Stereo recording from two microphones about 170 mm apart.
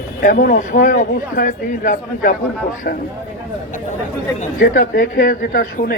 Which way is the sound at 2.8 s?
70° left (ahead or behind).